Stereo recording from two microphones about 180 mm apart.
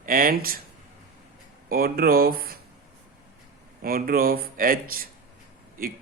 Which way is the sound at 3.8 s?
55° right (ahead or behind).